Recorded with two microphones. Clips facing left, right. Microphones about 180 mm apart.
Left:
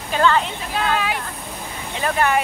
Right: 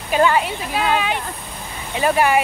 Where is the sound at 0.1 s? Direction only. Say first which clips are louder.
Right 2 dB; 15° right (ahead or behind).